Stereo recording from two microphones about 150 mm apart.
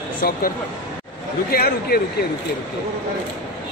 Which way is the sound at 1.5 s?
90° left.